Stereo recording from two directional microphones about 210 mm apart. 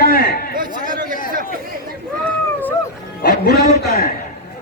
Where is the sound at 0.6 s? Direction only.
40° right (ahead or behind).